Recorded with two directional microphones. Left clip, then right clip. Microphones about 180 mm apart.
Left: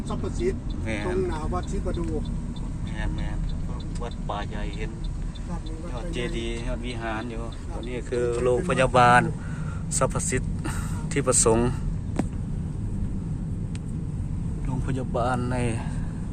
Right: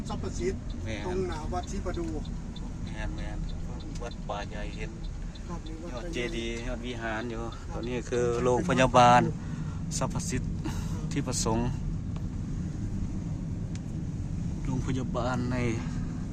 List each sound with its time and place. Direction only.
0.9 s speech: centre (ahead or behind)
4.0 s speech: centre (ahead or behind)
6.1 s speech: 15° right (ahead or behind)
10.0 s speech: centre (ahead or behind)
14.8 s speech: centre (ahead or behind)